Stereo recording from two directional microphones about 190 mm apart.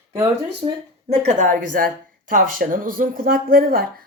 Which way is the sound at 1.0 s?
40° right (ahead or behind).